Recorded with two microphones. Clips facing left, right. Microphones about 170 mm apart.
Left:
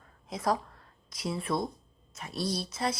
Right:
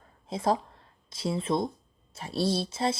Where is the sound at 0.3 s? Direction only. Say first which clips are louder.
Right 3 dB; 30° right (ahead or behind).